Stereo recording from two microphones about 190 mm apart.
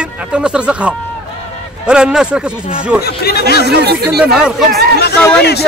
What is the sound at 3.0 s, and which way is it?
Speech, 55° left (ahead or behind).